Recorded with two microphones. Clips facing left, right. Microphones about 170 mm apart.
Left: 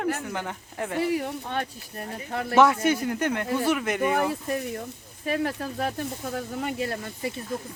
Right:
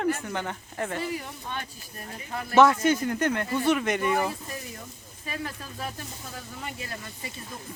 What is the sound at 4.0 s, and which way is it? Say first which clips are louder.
Speech: left 2 dB; 60° left (ahead or behind).